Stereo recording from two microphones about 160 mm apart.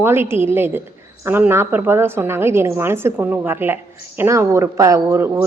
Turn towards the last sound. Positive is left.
turn(degrees=-15)  # may be behind; listen again after turning